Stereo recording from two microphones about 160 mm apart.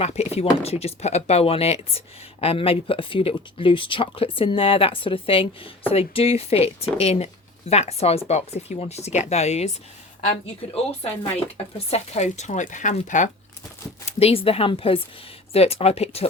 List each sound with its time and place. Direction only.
0.0 s speech: 40° left (ahead or behind)
11.0 s speech: 35° left (ahead or behind)
14.2 s speech: 40° left (ahead or behind)